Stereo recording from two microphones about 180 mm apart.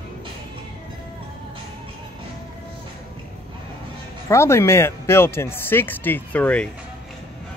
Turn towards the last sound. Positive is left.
turn(degrees=10)  # may be behind; listen again after turning